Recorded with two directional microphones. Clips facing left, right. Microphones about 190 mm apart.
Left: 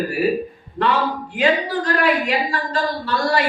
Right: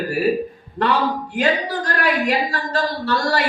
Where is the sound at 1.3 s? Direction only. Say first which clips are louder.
Left 3 dB; 45° right (ahead or behind).